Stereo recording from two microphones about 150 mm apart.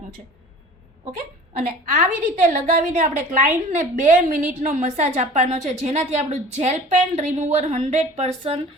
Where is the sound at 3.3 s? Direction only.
55° right (ahead or behind).